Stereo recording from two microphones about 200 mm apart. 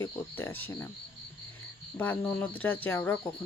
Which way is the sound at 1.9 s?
10° left (ahead or behind).